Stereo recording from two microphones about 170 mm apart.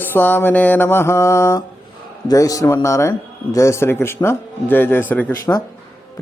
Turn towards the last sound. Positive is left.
turn(degrees=15)  # may be behind; listen again after turning